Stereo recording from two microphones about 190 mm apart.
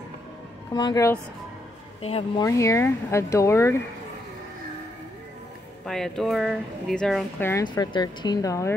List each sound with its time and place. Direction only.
0.7 s speech: 20° left (ahead or behind)
2.0 s speech: 30° left (ahead or behind)
2.4 s speech: 15° left (ahead or behind)
5.9 s speech: centre (ahead or behind)
7.4 s speech: 20° left (ahead or behind)